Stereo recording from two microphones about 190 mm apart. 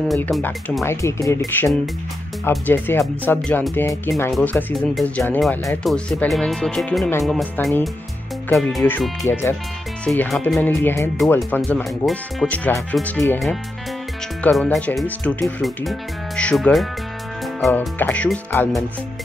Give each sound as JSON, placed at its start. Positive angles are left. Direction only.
{"t": 0.1, "sound": "speech", "side_deg": 5}
{"t": 0.8, "sound": "speech", "side_deg": 15}